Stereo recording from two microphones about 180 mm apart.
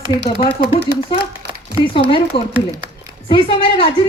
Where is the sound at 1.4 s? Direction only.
65° right (ahead or behind).